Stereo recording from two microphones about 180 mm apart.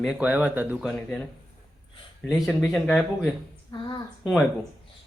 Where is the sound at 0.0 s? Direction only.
5° right (ahead or behind).